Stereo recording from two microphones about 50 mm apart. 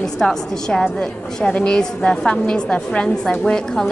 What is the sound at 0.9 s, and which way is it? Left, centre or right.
A woman's voice, left.